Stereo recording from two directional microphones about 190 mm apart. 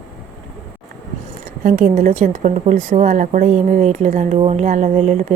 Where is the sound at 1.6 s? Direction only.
45° right (ahead or behind).